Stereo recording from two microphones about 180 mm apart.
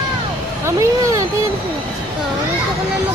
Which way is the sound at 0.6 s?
15° right (ahead or behind).